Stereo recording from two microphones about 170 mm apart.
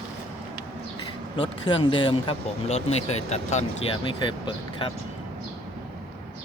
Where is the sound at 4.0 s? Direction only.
30° left (ahead or behind).